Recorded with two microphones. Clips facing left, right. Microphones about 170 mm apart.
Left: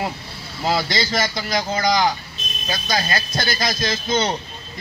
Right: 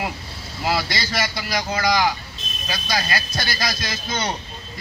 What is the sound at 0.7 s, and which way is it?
A man's voice, 25° left (ahead or behind).